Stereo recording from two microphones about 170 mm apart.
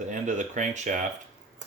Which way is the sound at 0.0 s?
45° right (ahead or behind).